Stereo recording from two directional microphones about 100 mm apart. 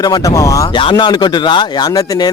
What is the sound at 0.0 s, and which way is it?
Speech, 40° left (ahead or behind).